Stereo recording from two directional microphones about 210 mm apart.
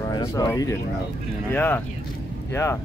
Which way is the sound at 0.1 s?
15° left (ahead or behind).